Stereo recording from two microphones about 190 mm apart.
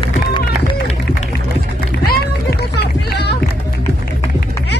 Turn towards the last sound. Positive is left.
turn(degrees=60)  # may be behind; listen again after turning